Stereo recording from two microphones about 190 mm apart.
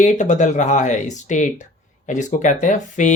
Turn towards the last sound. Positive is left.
turn(degrees=40)  # may be behind; listen again after turning